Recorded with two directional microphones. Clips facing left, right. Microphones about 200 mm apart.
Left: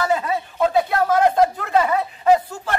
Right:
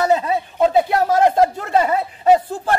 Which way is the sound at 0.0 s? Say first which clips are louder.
Right 4 dB; 25° right (ahead or behind).